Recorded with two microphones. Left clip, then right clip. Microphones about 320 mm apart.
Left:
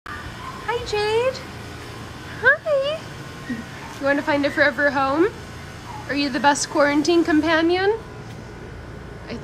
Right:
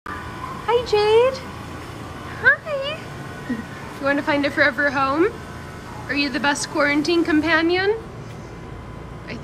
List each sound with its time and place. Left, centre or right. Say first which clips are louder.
0.7 s speech: right 5 dB; centre
2.4 s a sound: left 1 dB; centre
4.0 s a woman's voice: even; centre